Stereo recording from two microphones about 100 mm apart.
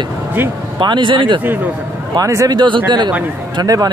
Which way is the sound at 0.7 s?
55° right (ahead or behind).